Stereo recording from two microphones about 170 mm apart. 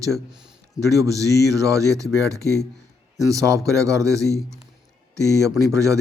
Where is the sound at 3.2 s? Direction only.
20° right (ahead or behind).